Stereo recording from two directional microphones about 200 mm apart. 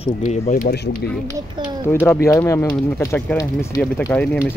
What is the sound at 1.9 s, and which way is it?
Speech, 10° left (ahead or behind).